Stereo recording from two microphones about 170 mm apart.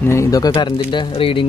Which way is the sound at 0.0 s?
15° left (ahead or behind).